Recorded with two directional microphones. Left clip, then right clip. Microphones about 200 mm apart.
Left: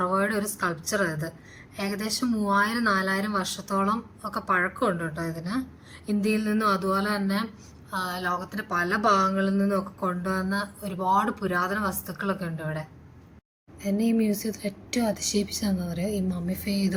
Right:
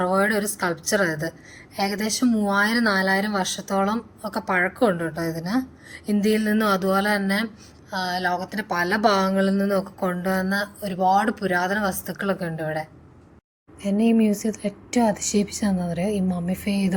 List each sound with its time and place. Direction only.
0.0 s a woman's voice: 10° right (ahead or behind)
13.8 s speech: 20° right (ahead or behind)